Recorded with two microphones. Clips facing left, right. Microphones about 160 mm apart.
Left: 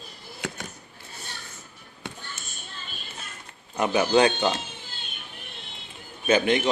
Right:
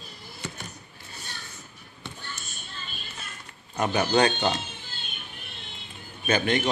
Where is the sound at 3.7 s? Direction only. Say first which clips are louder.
Left 2 dB; 10° left (ahead or behind).